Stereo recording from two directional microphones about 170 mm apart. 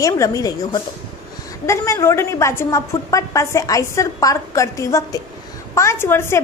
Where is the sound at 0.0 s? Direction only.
20° left (ahead or behind).